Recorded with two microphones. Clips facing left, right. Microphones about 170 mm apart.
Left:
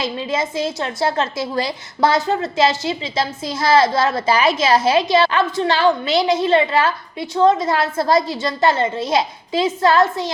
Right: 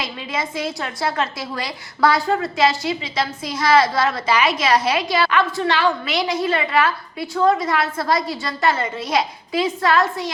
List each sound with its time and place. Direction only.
0.0 s a woman's voice: 25° left (ahead or behind)